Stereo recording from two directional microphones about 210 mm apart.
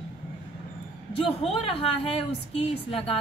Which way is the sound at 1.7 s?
25° left (ahead or behind).